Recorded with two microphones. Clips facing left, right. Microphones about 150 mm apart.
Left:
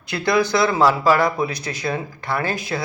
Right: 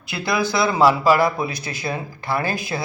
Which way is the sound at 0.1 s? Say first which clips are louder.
Left 3 dB; 5° right (ahead or behind).